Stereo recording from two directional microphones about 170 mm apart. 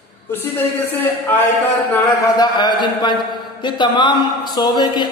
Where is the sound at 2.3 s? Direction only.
25° left (ahead or behind).